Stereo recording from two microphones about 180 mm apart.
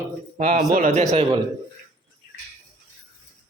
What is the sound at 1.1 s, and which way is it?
Speech, 35° right (ahead or behind).